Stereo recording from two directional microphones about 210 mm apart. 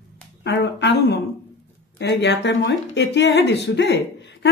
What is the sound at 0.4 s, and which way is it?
Speech, 55° left (ahead or behind).